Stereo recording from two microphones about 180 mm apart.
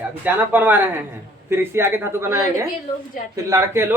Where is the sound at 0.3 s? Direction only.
10° right (ahead or behind).